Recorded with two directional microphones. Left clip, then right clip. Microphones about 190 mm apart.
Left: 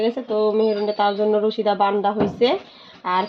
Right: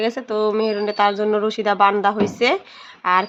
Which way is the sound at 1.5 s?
10° left (ahead or behind).